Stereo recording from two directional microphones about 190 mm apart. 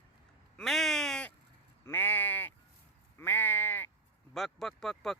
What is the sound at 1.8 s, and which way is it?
Sheep, 10° left (ahead or behind).